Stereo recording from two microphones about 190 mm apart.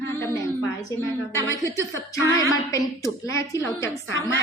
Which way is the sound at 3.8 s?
70° left (ahead or behind).